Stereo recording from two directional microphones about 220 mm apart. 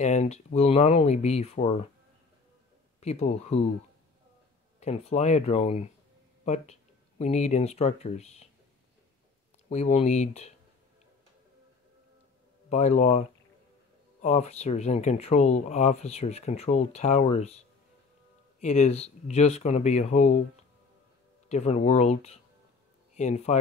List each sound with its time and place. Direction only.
0.0 s speech: 30° left (ahead or behind)
3.0 s speech: 30° left (ahead or behind)
4.7 s speech: 30° left (ahead or behind)
9.7 s speech: 30° left (ahead or behind)
12.6 s speech: 30° left (ahead or behind)
14.2 s speech: 30° left (ahead or behind)
18.6 s speech: 30° left (ahead or behind)
21.5 s speech: 30° left (ahead or behind)